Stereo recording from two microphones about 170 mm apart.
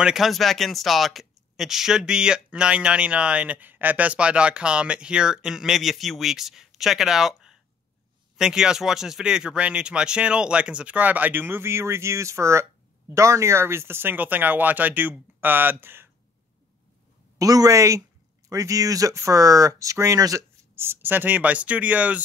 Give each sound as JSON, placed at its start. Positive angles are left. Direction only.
{"t": 0.0, "sound": "speech", "side_deg": 0}
{"t": 17.4, "sound": "speech", "side_deg": -20}